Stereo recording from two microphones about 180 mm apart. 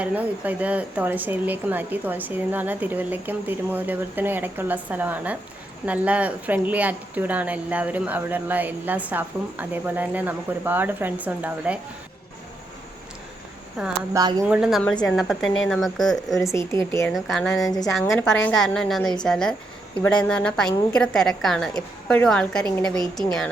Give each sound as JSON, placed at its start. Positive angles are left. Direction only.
{"t": 0.0, "sound": "speech", "side_deg": -10}
{"t": 13.8, "sound": "a woman's voice", "side_deg": 0}
{"t": 14.1, "sound": "speech", "side_deg": -20}
{"t": 14.4, "sound": "a woman's voice", "side_deg": -5}